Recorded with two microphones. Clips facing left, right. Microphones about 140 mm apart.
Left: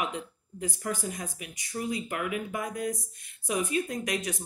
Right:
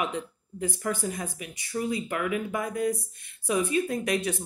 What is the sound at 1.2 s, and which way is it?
Speech, 30° right (ahead or behind).